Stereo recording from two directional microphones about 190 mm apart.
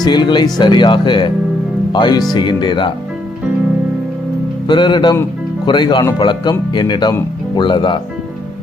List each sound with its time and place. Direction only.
0.0 s speech: 25° left (ahead or behind)
4.6 s speech: 25° left (ahead or behind)